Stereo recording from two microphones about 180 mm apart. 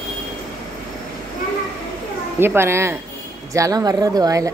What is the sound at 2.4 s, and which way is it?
A woman's voice, 15° right (ahead or behind).